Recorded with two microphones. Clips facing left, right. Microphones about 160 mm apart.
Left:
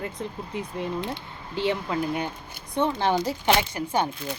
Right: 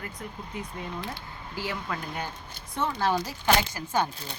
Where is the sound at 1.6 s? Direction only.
25° left (ahead or behind).